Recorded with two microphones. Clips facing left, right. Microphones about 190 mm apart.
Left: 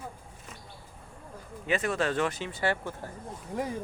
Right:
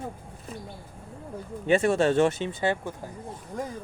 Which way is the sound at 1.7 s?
30° right (ahead or behind).